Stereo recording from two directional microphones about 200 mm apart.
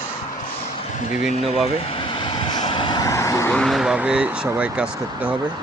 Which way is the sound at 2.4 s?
25° left (ahead or behind).